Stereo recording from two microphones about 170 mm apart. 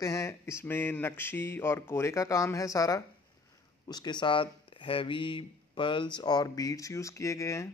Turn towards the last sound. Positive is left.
turn(degrees=20)  # may be behind; listen again after turning